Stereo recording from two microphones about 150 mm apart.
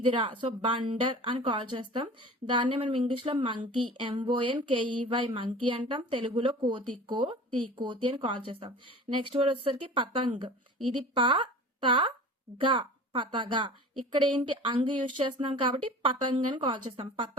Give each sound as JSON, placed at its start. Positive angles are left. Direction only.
{"t": 0.0, "sound": "a woman's voice", "side_deg": -35}